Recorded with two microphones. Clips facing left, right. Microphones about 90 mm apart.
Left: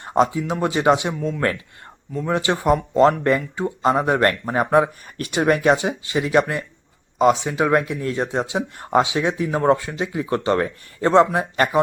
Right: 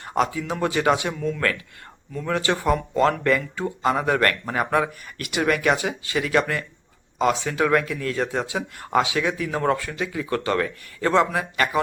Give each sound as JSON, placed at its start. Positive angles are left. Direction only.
{"t": 0.0, "sound": "speech", "side_deg": 25}